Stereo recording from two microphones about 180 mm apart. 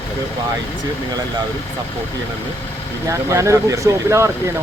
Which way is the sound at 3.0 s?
15° right (ahead or behind).